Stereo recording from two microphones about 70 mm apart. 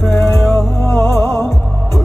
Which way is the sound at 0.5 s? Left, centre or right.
Left.